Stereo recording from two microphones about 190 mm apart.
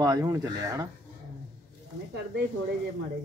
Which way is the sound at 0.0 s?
15° right (ahead or behind).